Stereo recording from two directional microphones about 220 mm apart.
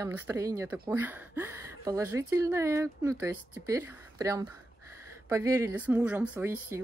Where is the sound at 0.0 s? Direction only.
15° right (ahead or behind).